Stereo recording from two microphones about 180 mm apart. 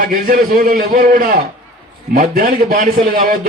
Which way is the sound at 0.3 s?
55° right (ahead or behind).